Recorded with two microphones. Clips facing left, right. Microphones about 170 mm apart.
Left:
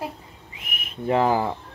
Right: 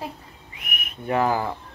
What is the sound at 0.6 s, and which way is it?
Speech, 25° left (ahead or behind).